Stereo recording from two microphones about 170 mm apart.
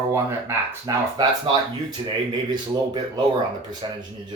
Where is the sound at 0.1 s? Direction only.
15° right (ahead or behind).